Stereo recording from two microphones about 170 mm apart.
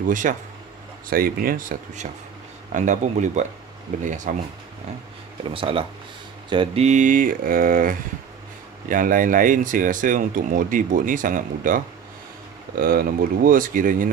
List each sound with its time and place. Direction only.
0.1 s speech: 50° right (ahead or behind)
1.1 s speech: 60° right (ahead or behind)
5.5 s speech: 30° right (ahead or behind); by 14.1 s 55° right (ahead or behind)